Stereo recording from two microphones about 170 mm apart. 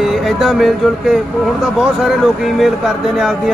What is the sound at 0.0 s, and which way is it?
Speech, centre (ahead or behind).